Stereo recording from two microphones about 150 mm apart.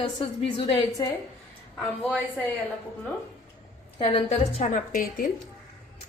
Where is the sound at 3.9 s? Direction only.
35° left (ahead or behind).